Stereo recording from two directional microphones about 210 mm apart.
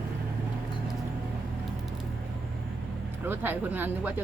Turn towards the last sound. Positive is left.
turn(degrees=-10)  # may be behind; listen again after turning